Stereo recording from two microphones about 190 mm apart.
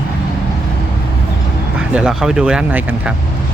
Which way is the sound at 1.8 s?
5° right (ahead or behind).